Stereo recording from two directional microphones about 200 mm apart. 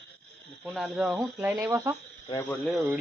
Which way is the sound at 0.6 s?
Centre (ahead or behind).